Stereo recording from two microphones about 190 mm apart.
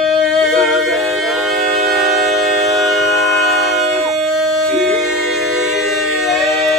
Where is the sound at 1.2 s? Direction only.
Centre (ahead or behind).